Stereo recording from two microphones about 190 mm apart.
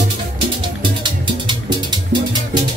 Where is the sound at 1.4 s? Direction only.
25° right (ahead or behind).